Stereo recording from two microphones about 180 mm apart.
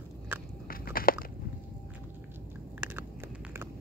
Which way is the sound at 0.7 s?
55° left (ahead or behind).